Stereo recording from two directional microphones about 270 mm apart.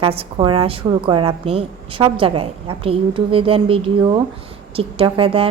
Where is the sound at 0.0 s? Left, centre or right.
Right.